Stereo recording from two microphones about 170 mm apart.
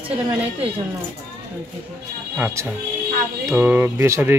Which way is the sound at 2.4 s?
15° right (ahead or behind).